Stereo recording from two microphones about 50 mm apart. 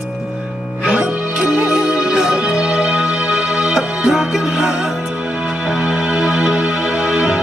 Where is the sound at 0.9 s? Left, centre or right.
Centre.